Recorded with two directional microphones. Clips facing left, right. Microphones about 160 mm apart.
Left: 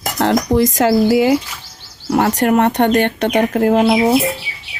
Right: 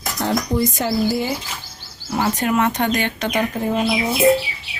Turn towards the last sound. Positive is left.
turn(degrees=70)  # may be behind; listen again after turning